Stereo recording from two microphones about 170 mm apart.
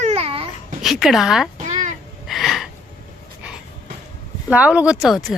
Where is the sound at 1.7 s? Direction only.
45° right (ahead or behind).